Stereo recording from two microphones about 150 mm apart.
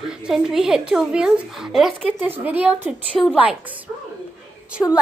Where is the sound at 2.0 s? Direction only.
10° right (ahead or behind).